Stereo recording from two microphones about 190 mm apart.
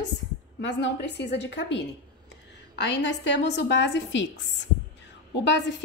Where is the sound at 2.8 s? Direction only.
70° left (ahead or behind).